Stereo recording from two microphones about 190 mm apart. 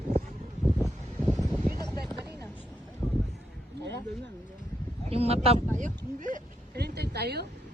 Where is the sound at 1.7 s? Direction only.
20° left (ahead or behind).